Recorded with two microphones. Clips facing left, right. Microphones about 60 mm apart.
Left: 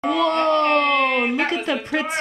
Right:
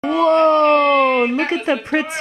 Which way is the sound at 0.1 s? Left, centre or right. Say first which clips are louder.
Right 6 dB; right.